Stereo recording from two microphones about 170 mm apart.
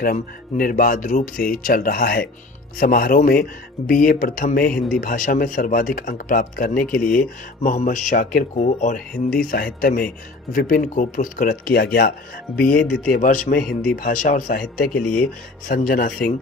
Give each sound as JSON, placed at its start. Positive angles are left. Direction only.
{"t": 0.0, "sound": "speech", "side_deg": 55}
{"t": 4.7, "sound": "a man's voice", "side_deg": 5}
{"t": 5.0, "sound": "speech", "side_deg": 55}
{"t": 8.5, "sound": "speech", "side_deg": 40}
{"t": 9.4, "sound": "speech", "side_deg": 60}
{"t": 12.6, "sound": "speech", "side_deg": 5}
{"t": 13.1, "sound": "speech", "side_deg": 55}